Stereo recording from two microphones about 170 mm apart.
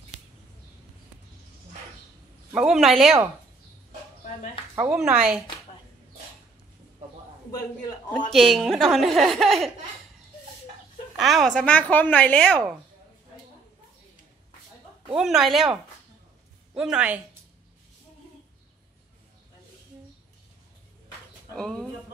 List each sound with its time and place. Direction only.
2.5 s speech: 5° right (ahead or behind)
4.7 s speech: 5° right (ahead or behind)
8.3 s speech: centre (ahead or behind)
11.1 s speech: centre (ahead or behind)
15.1 s speech: centre (ahead or behind)
21.5 s speech: 5° left (ahead or behind)